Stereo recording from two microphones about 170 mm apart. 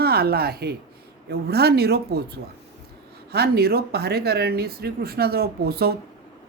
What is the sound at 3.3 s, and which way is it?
Speech, 65° right (ahead or behind).